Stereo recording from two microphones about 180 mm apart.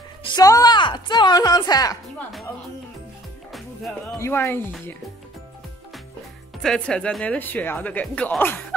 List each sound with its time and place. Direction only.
0.2 s speech: 20° left (ahead or behind)
4.2 s speech: 15° left (ahead or behind)
6.6 s speech: 5° left (ahead or behind)